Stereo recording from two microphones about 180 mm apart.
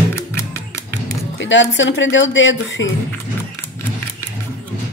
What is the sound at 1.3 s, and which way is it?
Speech, 90° left.